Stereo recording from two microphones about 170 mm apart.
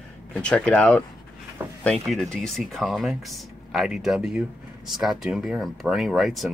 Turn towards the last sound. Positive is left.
turn(degrees=0)  # may be behind; listen again after turning